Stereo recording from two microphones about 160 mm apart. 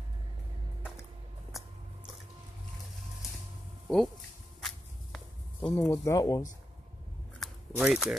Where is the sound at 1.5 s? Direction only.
Centre (ahead or behind).